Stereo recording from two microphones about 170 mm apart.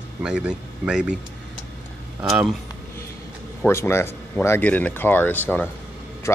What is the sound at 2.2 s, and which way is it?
Speech, centre (ahead or behind).